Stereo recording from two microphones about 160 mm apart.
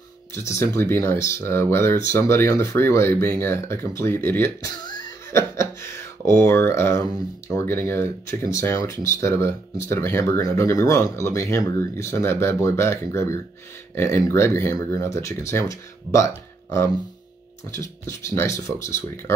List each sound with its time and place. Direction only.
0.5 s speech: 15° left (ahead or behind)
17.6 s speech: 15° left (ahead or behind)